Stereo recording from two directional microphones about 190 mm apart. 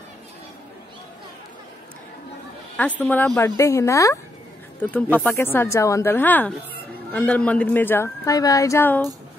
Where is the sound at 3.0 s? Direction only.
10° left (ahead or behind).